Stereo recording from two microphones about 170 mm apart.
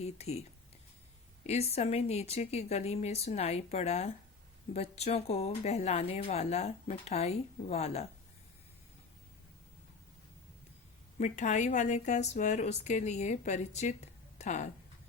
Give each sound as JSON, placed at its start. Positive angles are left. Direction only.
{"t": 0.0, "sound": "speech", "side_deg": 40}
{"t": 1.5, "sound": "speech", "side_deg": 40}
{"t": 11.2, "sound": "speech", "side_deg": 45}